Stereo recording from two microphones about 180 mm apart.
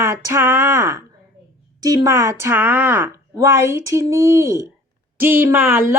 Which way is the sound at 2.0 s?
15° right (ahead or behind).